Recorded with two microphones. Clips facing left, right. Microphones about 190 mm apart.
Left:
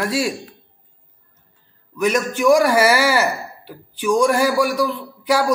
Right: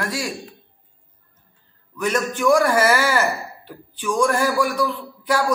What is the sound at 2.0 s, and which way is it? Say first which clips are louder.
A man's voice: left 3 dB; 15° left (ahead or behind).